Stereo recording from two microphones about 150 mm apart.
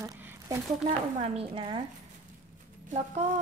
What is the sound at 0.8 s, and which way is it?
Speech, 40° right (ahead or behind).